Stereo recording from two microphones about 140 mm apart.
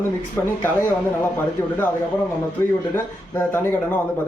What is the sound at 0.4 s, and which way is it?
Speech, 15° left (ahead or behind).